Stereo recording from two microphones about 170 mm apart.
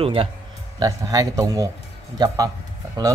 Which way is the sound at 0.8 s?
20° right (ahead or behind).